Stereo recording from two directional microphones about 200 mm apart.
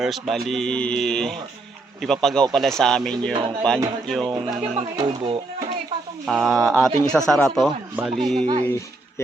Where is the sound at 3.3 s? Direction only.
25° right (ahead or behind).